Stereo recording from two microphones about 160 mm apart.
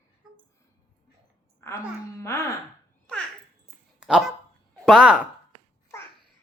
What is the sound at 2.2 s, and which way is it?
Music, 20° left (ahead or behind).